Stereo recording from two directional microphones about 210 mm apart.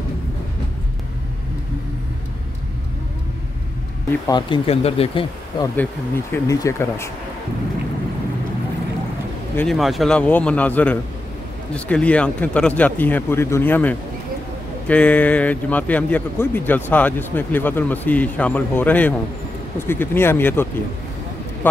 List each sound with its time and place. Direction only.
4.3 s speech: 20° left (ahead or behind)
5.8 s speech: 10° left (ahead or behind)
9.6 s speech: centre (ahead or behind)